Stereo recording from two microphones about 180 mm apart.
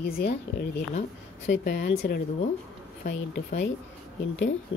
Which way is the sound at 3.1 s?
80° left.